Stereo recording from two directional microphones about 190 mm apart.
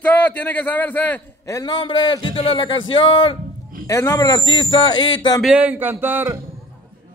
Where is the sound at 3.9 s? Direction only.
15° left (ahead or behind).